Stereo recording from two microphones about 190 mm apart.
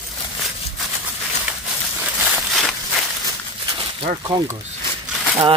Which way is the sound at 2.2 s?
Centre (ahead or behind).